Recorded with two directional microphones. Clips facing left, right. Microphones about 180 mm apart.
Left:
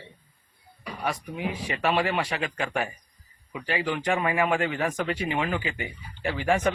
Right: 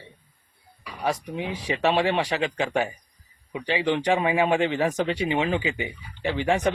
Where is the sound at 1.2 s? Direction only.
25° right (ahead or behind).